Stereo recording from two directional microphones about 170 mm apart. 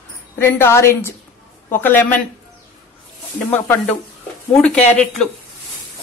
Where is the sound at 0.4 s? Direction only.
15° left (ahead or behind).